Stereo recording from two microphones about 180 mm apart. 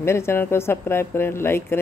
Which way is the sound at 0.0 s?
15° left (ahead or behind).